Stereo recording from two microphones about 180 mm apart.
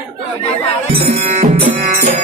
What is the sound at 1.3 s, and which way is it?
Music, 35° right (ahead or behind).